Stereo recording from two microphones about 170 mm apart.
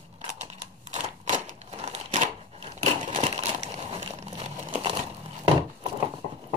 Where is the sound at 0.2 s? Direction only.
40° right (ahead or behind).